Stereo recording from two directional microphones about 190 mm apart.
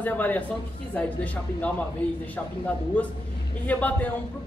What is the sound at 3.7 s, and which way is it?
Speech, 10° left (ahead or behind).